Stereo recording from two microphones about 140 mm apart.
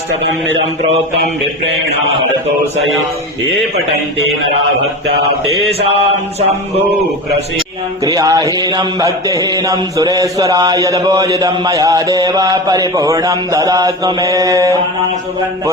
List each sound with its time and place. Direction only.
8.0 s mantra: 25° right (ahead or behind)